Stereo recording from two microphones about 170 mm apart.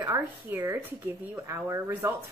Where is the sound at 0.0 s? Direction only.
15° right (ahead or behind).